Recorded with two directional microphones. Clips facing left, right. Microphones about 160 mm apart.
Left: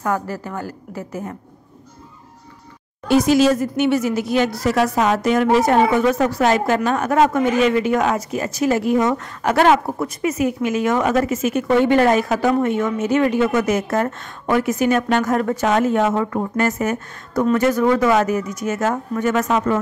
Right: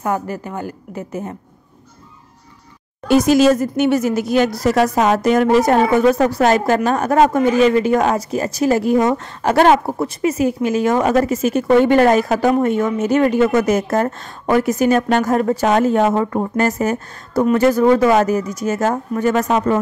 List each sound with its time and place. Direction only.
0.0 s a woman's voice: 20° right (ahead or behind)
3.1 s speech: 45° right (ahead or behind)